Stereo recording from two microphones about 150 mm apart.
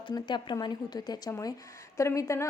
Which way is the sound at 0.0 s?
30° left (ahead or behind).